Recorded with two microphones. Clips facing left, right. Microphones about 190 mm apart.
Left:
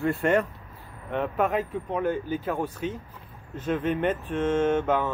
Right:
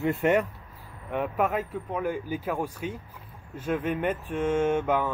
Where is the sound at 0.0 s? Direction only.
15° right (ahead or behind).